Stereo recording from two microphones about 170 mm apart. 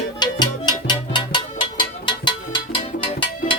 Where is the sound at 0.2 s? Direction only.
25° left (ahead or behind).